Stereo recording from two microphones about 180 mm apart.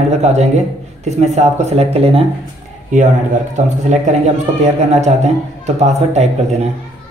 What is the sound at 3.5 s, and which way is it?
Speech, 40° right (ahead or behind).